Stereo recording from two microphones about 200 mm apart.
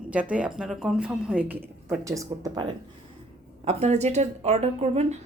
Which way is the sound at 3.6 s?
35° right (ahead or behind).